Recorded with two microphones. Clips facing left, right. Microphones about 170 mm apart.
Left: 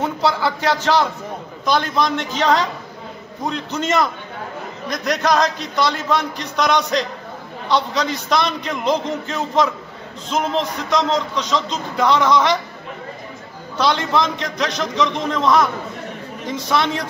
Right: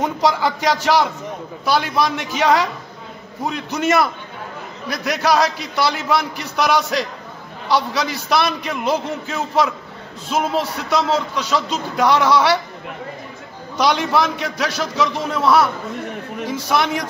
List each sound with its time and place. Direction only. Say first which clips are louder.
0.0 s a man's voice: right 1 dB; 15° right (ahead or behind)
13.7 s a man's voice: right 1 dB; 10° right (ahead or behind)